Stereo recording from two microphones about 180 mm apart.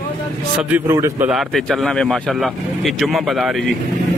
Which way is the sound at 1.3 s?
Centre (ahead or behind).